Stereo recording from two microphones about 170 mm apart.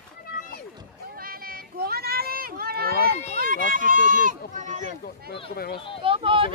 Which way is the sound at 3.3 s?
55° right (ahead or behind).